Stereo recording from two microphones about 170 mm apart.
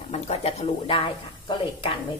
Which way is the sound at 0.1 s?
40° left (ahead or behind).